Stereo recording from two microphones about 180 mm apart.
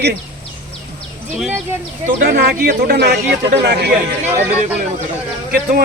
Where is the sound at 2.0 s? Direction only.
55° right (ahead or behind).